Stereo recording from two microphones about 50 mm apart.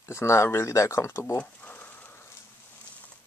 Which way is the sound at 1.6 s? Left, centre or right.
Left.